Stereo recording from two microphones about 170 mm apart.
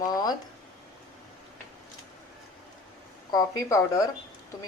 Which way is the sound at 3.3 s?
20° left (ahead or behind).